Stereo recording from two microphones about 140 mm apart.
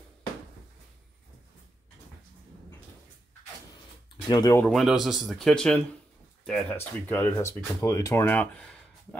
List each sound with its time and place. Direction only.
4.3 s speech: 30° left (ahead or behind)
4.6 s speech: centre (ahead or behind)